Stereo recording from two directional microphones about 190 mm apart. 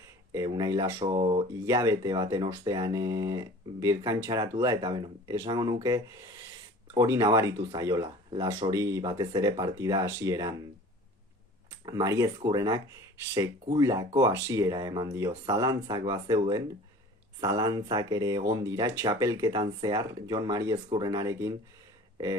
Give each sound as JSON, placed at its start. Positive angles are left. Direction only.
{"t": 0.3, "sound": "speech", "side_deg": -20}
{"t": 1.6, "sound": "speech", "side_deg": -15}
{"t": 11.9, "sound": "speech", "side_deg": -20}